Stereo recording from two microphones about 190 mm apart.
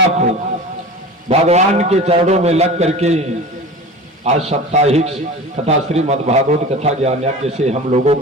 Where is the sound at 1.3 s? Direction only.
35° right (ahead or behind).